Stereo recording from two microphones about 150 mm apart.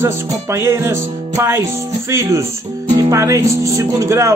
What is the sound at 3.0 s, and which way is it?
Speech, 20° right (ahead or behind).